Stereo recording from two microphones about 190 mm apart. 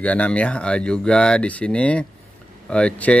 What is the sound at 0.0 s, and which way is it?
Speech, 5° left (ahead or behind).